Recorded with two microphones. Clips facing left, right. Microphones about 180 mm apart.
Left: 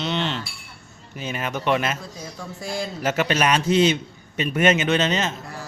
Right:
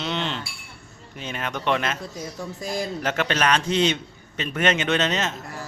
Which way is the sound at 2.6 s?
20° right (ahead or behind).